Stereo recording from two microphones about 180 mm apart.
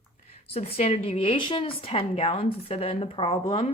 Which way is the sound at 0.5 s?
35° left (ahead or behind).